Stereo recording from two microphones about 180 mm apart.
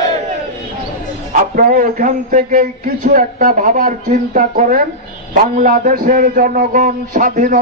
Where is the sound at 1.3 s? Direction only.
50° right (ahead or behind).